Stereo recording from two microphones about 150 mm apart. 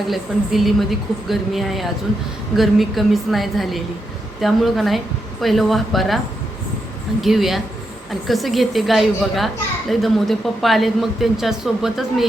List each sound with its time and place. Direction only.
0.1 s speech: centre (ahead or behind)
7.2 s speech: centre (ahead or behind)